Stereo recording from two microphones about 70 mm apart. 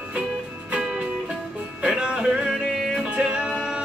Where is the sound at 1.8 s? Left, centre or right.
Centre.